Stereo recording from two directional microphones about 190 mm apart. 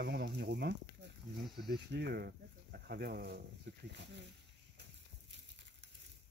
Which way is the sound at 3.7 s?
70° right (ahead or behind).